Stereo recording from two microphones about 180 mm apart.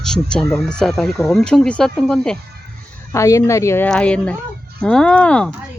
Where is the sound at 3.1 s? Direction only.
15° left (ahead or behind).